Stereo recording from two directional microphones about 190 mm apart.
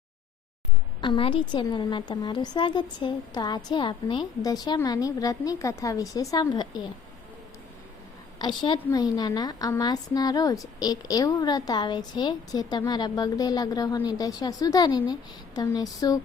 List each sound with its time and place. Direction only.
1.0 s a woman's voice: 25° left (ahead or behind)
8.4 s a woman's voice: 25° left (ahead or behind)